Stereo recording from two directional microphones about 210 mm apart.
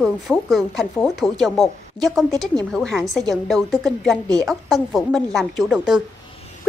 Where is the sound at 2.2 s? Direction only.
15° right (ahead or behind).